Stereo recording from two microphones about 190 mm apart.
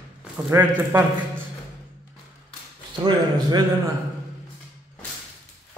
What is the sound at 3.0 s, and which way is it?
Speech, 20° right (ahead or behind).